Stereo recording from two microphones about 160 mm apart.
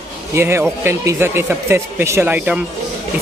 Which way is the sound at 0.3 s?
15° right (ahead or behind).